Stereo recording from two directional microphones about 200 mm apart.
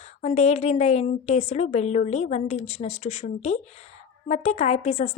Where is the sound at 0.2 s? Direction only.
35° left (ahead or behind).